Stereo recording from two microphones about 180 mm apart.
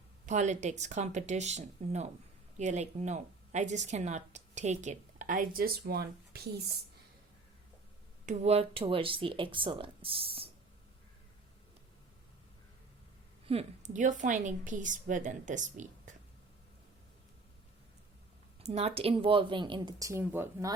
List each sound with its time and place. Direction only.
0.3 s a woman's voice: 40° right (ahead or behind); by 6.5 s 60° right (ahead or behind)
8.3 s speech: 35° right (ahead or behind)
13.5 s a woman's voice: 40° right (ahead or behind)
18.6 s speech: 35° right (ahead or behind); by 20.7 s 15° right (ahead or behind)